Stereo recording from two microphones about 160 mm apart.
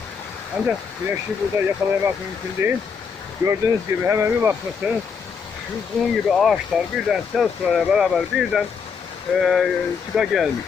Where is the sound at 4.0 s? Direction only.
15° right (ahead or behind).